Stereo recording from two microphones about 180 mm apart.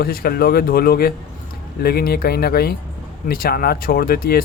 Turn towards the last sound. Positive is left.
turn(degrees=55)  # may be behind; listen again after turning